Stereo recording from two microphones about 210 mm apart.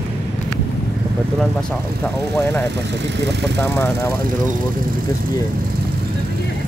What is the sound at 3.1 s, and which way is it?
Speech, 55° right (ahead or behind).